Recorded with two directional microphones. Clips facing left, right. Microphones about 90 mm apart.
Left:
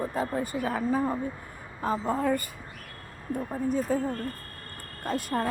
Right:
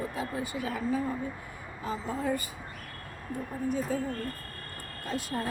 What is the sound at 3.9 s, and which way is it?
Speech, 50° left (ahead or behind).